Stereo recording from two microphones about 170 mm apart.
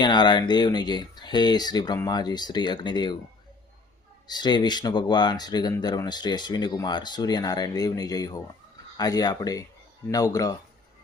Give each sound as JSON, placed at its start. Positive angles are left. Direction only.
{"t": 0.0, "sound": "speech", "side_deg": 25}
{"t": 4.3, "sound": "speech", "side_deg": 25}